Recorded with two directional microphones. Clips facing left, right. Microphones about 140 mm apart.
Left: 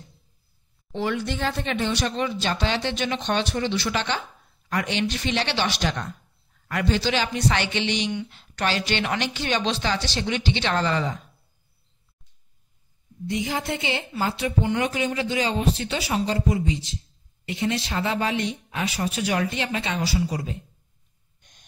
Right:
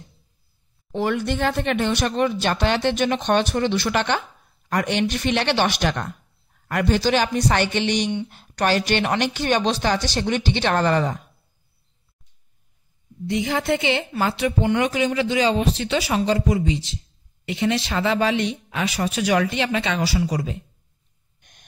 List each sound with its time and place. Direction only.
0.9 s a man's voice: 50° right (ahead or behind)
13.3 s speech: 65° right (ahead or behind)
21.4 s owl: 60° right (ahead or behind)